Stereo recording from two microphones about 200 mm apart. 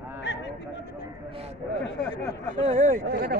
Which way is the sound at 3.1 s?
50° right (ahead or behind).